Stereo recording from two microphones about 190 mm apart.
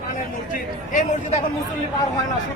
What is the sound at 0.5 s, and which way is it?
Speech, 45° left (ahead or behind).